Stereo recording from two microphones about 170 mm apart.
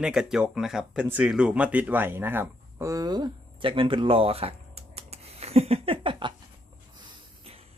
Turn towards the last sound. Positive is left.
turn(degrees=-30)  # may be behind; listen again after turning